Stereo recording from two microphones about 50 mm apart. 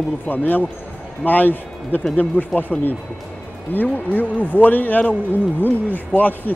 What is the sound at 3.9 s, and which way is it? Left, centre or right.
Speech, left.